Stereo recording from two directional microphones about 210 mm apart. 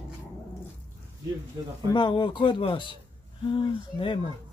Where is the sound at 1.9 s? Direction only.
20° left (ahead or behind).